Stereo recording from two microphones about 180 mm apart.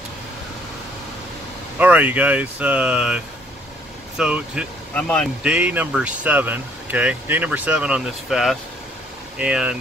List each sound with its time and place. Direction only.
1.8 s speech: 10° right (ahead or behind)
4.2 s speech: 5° right (ahead or behind)
4.9 s speech: 5° left (ahead or behind)
5.4 s speech: 5° right (ahead or behind)